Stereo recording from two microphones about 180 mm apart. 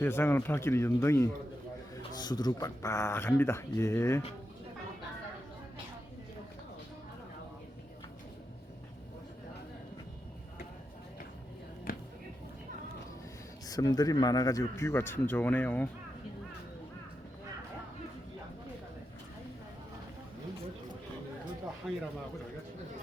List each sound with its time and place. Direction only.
0.0 s speech: 10° left (ahead or behind)
13.7 s speech: 20° left (ahead or behind)
21.8 s a sound: centre (ahead or behind)